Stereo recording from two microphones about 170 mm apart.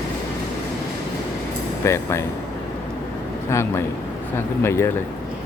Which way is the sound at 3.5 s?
15° left (ahead or behind).